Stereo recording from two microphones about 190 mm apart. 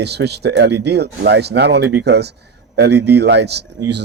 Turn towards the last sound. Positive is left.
turn(degrees=-60)  # may be behind; listen again after turning